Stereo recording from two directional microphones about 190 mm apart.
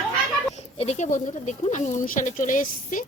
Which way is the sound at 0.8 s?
35° left (ahead or behind).